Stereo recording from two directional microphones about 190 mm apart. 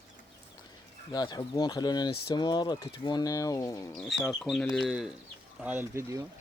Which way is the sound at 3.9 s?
Centre (ahead or behind).